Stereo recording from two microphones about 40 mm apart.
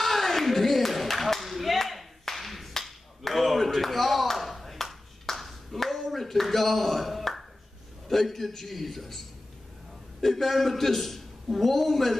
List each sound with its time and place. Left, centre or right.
0.0 s clapping: centre
8.1 s a man's voice: centre
10.2 s a man's voice: centre